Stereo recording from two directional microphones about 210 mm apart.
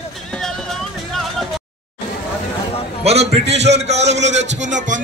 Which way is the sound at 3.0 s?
30° right (ahead or behind).